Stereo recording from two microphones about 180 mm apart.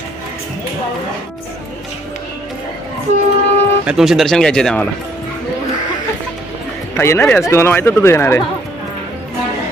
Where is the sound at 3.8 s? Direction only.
5° right (ahead or behind).